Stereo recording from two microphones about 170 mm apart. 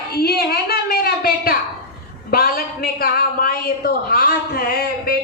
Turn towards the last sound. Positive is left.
turn(degrees=60)  # may be behind; listen again after turning